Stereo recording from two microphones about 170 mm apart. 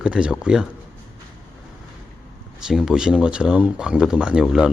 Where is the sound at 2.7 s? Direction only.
5° right (ahead or behind).